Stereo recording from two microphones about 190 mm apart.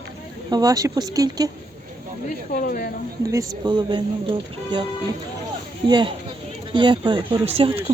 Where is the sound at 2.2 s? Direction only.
45° left (ahead or behind).